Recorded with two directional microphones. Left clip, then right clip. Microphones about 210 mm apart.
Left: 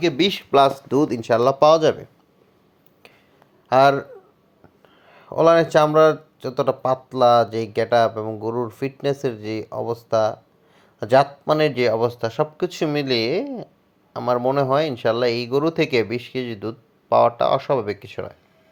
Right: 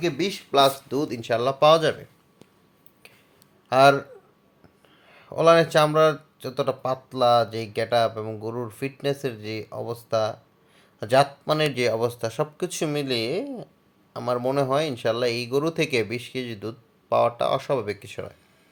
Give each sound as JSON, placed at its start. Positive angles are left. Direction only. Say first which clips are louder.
{"t": 0.0, "sound": "speech", "louder": "left 6 dB", "side_deg": 30}
{"t": 3.7, "sound": "speech", "louder": "left 2 dB", "side_deg": 15}
{"t": 5.0, "sound": "speech", "louder": "left 2 dB", "side_deg": 15}